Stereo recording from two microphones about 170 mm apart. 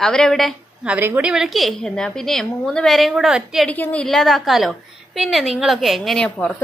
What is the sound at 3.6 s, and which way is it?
A woman's voice, 10° left (ahead or behind).